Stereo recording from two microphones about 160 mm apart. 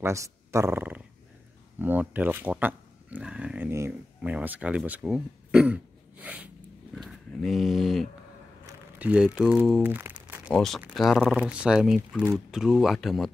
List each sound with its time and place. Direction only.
0.0 s speech: 15° right (ahead or behind)
10.5 s speech: centre (ahead or behind)